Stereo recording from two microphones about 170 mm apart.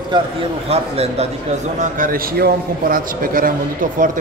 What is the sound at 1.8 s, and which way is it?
A man's voice, 55° right (ahead or behind).